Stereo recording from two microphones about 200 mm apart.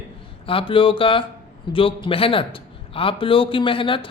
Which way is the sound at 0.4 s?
25° left (ahead or behind).